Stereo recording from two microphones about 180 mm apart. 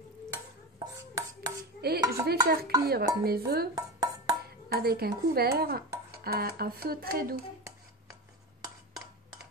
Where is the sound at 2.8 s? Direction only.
60° right (ahead or behind).